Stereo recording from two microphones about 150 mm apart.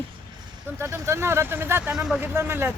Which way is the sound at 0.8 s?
15° right (ahead or behind).